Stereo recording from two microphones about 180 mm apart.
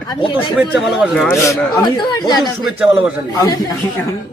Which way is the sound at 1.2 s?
15° left (ahead or behind).